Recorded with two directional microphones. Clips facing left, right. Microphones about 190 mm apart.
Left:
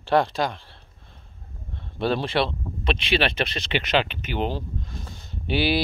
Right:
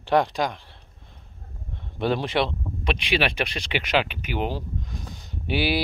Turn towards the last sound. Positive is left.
turn(degrees=-10)  # may be behind; listen again after turning